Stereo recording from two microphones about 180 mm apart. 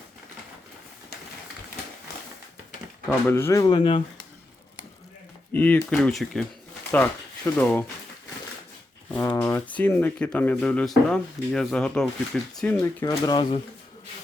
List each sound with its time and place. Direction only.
3.1 s speech: 10° left (ahead or behind)
3.8 s speech: 30° left (ahead or behind)
5.5 s speech: 10° left (ahead or behind)
9.1 s speech: 10° left (ahead or behind)